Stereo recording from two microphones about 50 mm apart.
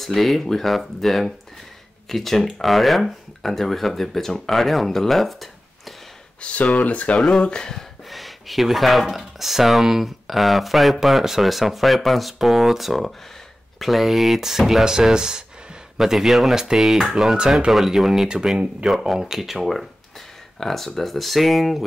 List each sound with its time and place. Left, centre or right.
0.0 s speech: centre
6.4 s speech: left
7.2 s speech: centre
18.9 s speech: centre